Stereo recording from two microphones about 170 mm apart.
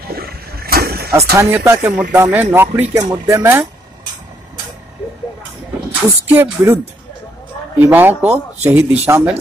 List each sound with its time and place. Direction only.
0.1 s vehicle: 65° right (ahead or behind)
1.3 s speech: 15° right (ahead or behind)
5.9 s speech: 10° right (ahead or behind)